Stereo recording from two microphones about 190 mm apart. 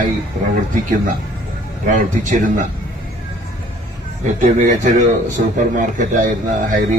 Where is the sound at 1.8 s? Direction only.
40° right (ahead or behind).